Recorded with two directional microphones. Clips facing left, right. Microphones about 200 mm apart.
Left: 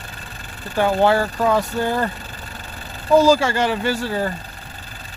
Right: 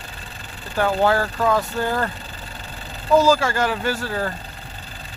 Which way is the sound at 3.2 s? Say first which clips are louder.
Left 3 dB; 10° left (ahead or behind).